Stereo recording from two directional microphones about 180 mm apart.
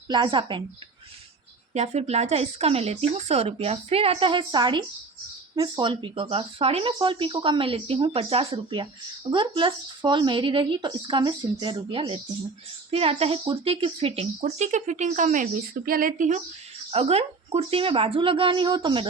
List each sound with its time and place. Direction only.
0.1 s speech: 25° right (ahead or behind)
1.7 s speech: 40° right (ahead or behind)